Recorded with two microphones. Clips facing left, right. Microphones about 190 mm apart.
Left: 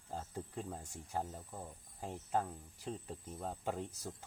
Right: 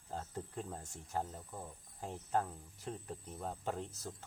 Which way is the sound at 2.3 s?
10° left (ahead or behind).